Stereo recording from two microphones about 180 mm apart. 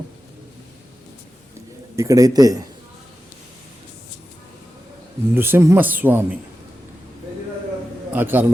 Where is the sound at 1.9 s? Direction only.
20° right (ahead or behind).